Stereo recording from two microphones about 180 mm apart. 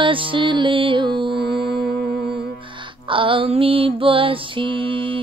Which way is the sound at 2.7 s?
30° right (ahead or behind).